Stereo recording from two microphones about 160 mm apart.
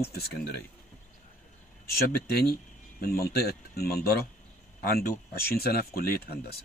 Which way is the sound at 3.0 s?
75° left (ahead or behind).